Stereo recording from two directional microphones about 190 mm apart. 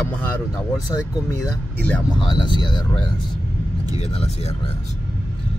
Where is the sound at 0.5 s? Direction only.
15° left (ahead or behind).